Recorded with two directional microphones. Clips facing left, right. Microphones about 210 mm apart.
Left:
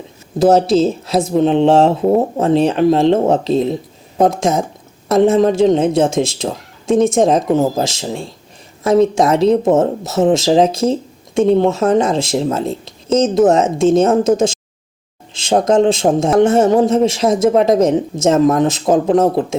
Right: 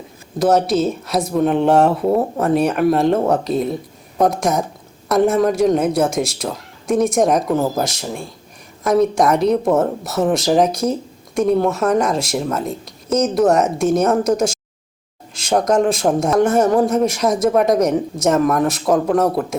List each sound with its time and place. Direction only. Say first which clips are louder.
0.3 s speech: left 4 dB; 25° left (ahead or behind)